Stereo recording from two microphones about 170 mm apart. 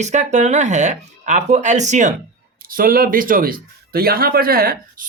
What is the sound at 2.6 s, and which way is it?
Speech, 55° right (ahead or behind).